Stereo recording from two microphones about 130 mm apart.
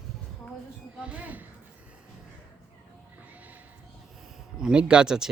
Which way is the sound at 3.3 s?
10° right (ahead or behind).